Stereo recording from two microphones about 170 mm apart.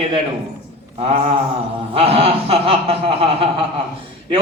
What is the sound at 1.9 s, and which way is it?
A man's voice, 35° right (ahead or behind).